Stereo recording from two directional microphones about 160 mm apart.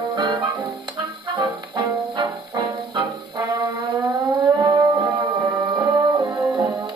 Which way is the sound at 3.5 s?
25° right (ahead or behind).